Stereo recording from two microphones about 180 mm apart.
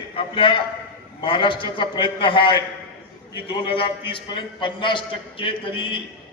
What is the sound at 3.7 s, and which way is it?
A man's voice, 30° left (ahead or behind).